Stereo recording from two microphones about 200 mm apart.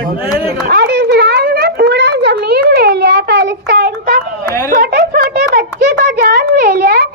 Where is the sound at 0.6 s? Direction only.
55° right (ahead or behind).